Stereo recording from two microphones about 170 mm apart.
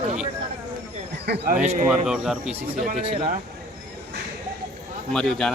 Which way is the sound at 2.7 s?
45° right (ahead or behind).